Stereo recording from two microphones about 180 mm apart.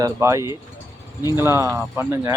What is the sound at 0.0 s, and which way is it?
A man's voice, 15° right (ahead or behind).